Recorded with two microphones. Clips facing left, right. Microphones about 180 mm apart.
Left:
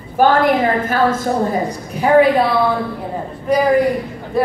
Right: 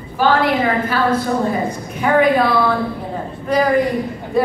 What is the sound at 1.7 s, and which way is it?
Speech, 35° left (ahead or behind).